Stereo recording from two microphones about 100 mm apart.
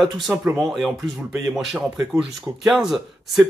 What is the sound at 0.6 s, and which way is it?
Speech, 5° right (ahead or behind).